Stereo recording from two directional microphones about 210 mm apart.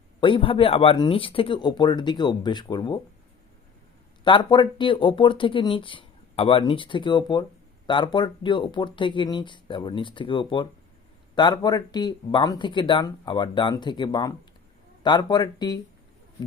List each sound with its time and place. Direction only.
0.2 s speech: 25° left (ahead or behind)
4.2 s speech: 20° left (ahead or behind)